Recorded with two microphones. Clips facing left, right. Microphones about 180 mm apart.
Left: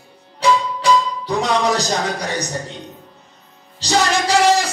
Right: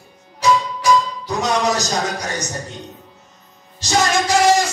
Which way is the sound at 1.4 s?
30° left (ahead or behind).